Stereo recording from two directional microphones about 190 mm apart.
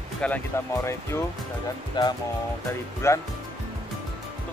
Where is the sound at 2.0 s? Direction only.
25° left (ahead or behind).